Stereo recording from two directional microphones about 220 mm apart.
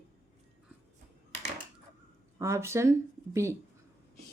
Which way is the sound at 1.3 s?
30° right (ahead or behind).